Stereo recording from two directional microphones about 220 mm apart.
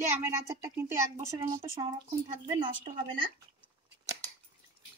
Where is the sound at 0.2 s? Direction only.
15° right (ahead or behind).